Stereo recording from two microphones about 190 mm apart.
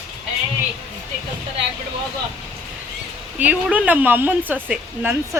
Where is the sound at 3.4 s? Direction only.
10° right (ahead or behind).